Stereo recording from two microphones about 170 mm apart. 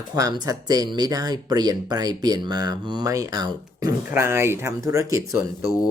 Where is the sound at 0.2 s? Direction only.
20° right (ahead or behind).